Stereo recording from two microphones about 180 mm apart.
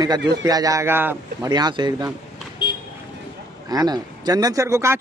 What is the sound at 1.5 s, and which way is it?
Speech, 25° right (ahead or behind).